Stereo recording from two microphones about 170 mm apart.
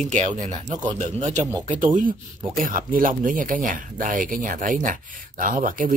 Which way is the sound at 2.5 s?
55° right (ahead or behind).